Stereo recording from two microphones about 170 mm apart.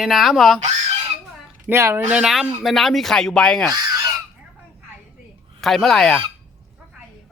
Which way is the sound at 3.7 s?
20° right (ahead or behind).